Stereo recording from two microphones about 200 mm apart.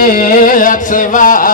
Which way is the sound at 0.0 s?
45° left (ahead or behind).